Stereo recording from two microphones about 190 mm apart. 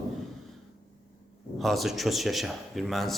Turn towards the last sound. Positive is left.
turn(degrees=0)  # may be behind; listen again after turning